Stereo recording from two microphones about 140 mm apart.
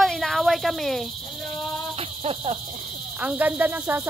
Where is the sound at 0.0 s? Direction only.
Centre (ahead or behind).